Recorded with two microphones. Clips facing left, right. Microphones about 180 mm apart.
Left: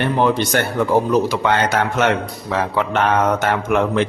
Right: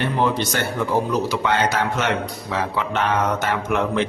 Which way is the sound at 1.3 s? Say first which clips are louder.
Left 3 dB; 50° left (ahead or behind).